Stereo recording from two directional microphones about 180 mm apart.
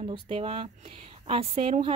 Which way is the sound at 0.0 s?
35° right (ahead or behind).